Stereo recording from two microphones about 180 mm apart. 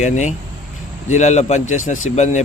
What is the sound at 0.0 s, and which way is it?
Speech, 40° left (ahead or behind).